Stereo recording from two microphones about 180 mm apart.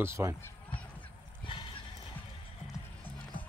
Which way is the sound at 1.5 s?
30° left (ahead or behind).